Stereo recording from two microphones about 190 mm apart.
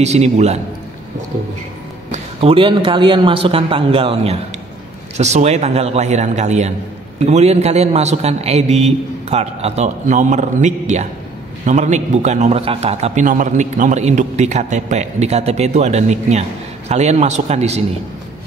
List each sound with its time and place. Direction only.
0.0 s a man's voice: 35° right (ahead or behind)
2.0 s a man's voice: 30° right (ahead or behind)